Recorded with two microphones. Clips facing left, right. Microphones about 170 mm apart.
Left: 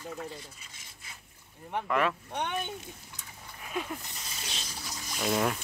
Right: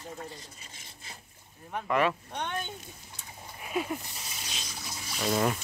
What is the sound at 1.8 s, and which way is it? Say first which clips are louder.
Speech: right 2 dB; 5° right (ahead or behind).